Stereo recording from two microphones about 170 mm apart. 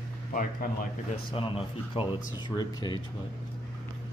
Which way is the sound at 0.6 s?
60° left (ahead or behind).